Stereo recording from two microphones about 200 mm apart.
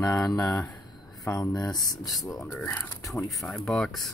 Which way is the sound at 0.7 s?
15° left (ahead or behind).